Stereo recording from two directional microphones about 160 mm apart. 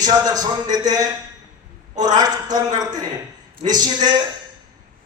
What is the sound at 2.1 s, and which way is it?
Speech, 25° right (ahead or behind).